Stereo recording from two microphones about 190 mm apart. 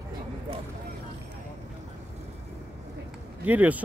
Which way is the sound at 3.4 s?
10° right (ahead or behind).